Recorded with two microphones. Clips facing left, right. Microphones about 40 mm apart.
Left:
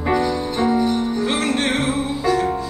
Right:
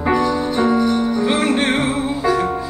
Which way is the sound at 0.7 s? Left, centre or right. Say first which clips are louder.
Right 1 dB; right.